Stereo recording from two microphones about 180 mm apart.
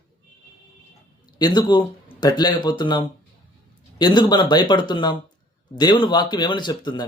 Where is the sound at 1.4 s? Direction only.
25° left (ahead or behind).